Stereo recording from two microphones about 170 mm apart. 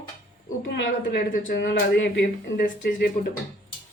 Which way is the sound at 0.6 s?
90° left.